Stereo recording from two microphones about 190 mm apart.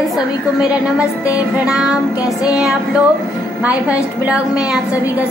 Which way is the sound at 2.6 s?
5° right (ahead or behind).